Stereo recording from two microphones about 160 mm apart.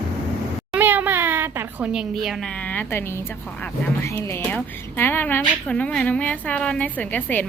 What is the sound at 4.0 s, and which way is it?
Speech, 15° left (ahead or behind).